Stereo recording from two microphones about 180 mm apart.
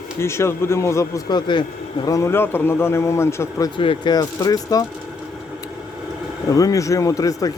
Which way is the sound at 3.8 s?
25° left (ahead or behind).